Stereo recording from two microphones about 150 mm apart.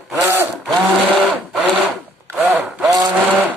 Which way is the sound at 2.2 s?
10° right (ahead or behind).